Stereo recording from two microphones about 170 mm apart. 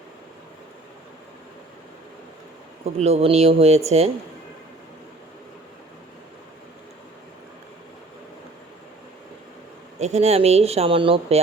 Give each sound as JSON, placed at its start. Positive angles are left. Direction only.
{"t": 2.8, "sound": "speech", "side_deg": -40}
{"t": 10.0, "sound": "speech", "side_deg": -40}